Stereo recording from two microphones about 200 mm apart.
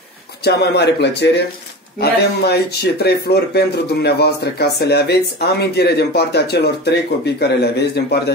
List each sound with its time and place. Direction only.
0.4 s speech: 55° left (ahead or behind)